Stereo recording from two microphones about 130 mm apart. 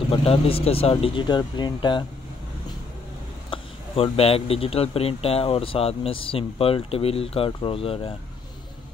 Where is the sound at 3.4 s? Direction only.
45° left (ahead or behind).